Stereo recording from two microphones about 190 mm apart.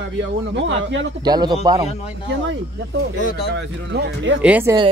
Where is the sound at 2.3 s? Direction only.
70° right (ahead or behind).